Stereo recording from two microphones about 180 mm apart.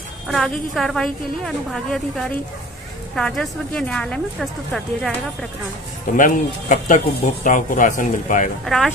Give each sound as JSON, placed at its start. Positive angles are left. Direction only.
{"t": 0.3, "sound": "a woman's voice", "side_deg": 0}
{"t": 6.1, "sound": "speech", "side_deg": 45}
{"t": 8.6, "sound": "a woman's voice", "side_deg": 0}